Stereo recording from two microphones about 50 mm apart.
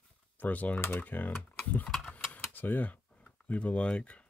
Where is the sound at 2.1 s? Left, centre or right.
Left.